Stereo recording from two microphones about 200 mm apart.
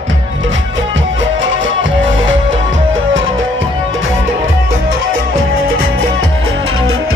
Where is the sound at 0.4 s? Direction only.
70° right (ahead or behind).